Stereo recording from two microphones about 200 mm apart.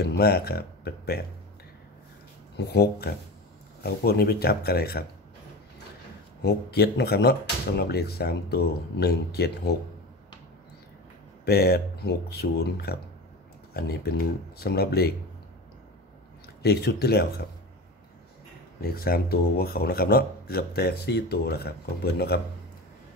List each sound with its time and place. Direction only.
0.0 s speech: 55° left (ahead or behind)
2.5 s speech: 55° left (ahead or behind)
6.4 s speech: 55° left (ahead or behind)
11.4 s speech: 50° left (ahead or behind)
16.6 s speech: 55° left (ahead or behind)
18.8 s speech: 50° left (ahead or behind)